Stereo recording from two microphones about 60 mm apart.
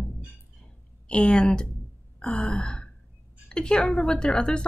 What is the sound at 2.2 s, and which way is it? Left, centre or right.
Sigh, centre.